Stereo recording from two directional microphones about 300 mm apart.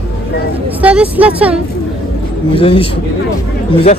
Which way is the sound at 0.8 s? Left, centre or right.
Centre.